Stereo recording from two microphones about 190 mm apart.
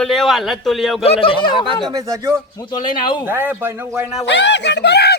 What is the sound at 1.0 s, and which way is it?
Speech, 30° left (ahead or behind).